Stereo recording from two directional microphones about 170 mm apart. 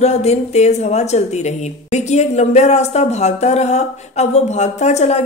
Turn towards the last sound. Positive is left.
turn(degrees=40)  # may be behind; listen again after turning